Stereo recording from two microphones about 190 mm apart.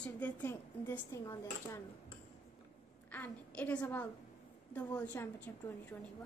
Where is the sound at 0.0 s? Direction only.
10° left (ahead or behind).